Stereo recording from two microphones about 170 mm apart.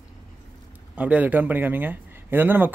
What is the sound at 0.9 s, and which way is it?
Speech, 10° right (ahead or behind).